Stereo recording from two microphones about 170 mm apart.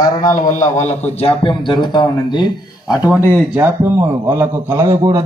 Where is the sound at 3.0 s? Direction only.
10° right (ahead or behind).